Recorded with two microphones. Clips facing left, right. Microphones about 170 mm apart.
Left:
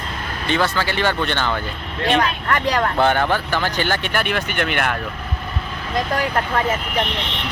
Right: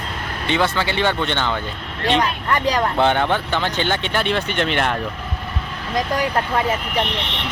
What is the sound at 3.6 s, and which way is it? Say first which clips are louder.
Speech: even; 25° right (ahead or behind).